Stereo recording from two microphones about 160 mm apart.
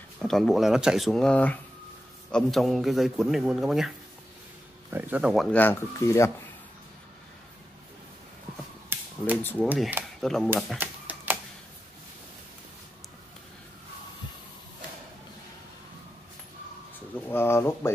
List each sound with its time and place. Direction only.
0.2 s a man's voice: centre (ahead or behind)
4.9 s a man's voice: 10° right (ahead or behind)
5.6 s speech: 15° left (ahead or behind)
8.9 s cap gun: 15° right (ahead or behind)
9.4 s speech: 10° left (ahead or behind)
9.8 s speech: 10° right (ahead or behind)
10.2 s a man's voice: centre (ahead or behind)
10.8 s typewriter: 10° right (ahead or behind)
17.3 s a sound: 15° left (ahead or behind)